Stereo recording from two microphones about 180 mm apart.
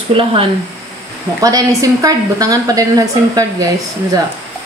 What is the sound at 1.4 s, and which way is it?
A woman's voice, 20° right (ahead or behind).